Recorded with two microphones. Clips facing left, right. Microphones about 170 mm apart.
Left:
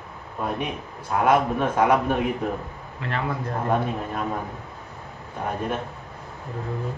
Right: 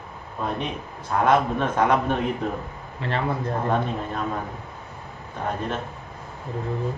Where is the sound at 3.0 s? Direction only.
30° right (ahead or behind).